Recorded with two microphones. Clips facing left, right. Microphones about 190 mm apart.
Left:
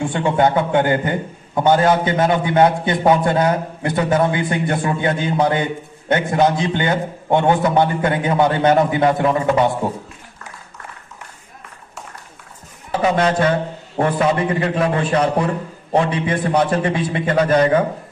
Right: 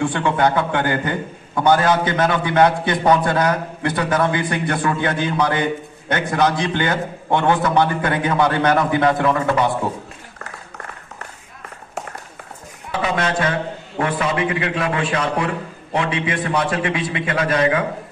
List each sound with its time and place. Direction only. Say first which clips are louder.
0.0 s a man's voice: left 1 dB; 25° left (ahead or behind)
12.9 s a man's voice: left 4 dB; 35° left (ahead or behind)